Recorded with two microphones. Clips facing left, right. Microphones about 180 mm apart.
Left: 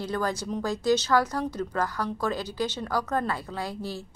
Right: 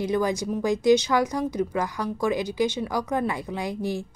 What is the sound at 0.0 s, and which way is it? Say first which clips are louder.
A woman's voice: right 5 dB; 15° right (ahead or behind).